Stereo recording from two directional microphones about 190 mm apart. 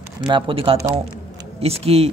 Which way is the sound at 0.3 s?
30° right (ahead or behind).